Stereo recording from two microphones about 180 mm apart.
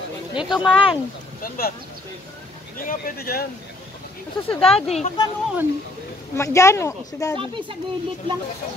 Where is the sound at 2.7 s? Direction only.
50° left (ahead or behind).